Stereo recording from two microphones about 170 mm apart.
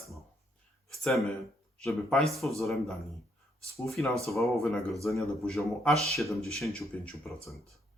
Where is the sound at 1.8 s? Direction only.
Centre (ahead or behind).